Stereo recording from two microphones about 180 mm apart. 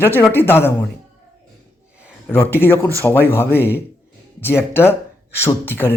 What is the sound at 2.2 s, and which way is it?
Speech, 10° left (ahead or behind).